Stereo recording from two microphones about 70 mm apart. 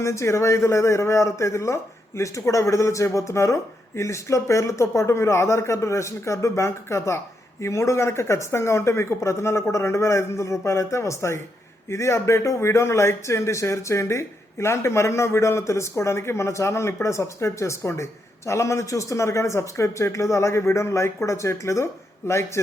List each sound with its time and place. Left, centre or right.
0.0 s speech: left